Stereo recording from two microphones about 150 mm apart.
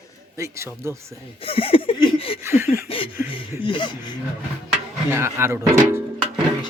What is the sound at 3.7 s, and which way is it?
Speech, 30° left (ahead or behind).